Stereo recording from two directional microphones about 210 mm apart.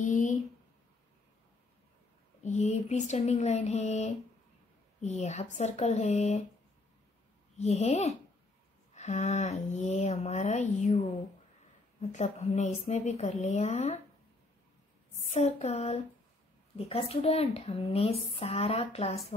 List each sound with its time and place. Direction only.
0.0 s a sound: 35° left (ahead or behind)
2.4 s speech: 35° left (ahead or behind)
7.5 s speech: 30° left (ahead or behind)
15.2 s speech: 30° left (ahead or behind)